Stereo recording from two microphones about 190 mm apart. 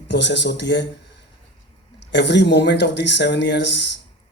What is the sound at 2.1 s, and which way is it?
A man's voice, 65° left (ahead or behind).